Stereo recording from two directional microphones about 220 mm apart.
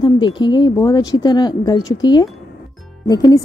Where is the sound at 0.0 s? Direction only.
20° left (ahead or behind).